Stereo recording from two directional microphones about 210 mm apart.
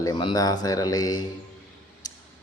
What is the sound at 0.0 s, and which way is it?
Speech, 20° left (ahead or behind).